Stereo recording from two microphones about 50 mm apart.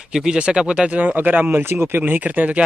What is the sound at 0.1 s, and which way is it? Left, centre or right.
Speech, centre.